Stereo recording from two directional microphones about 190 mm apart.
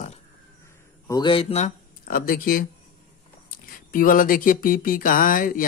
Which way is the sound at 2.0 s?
50° left (ahead or behind).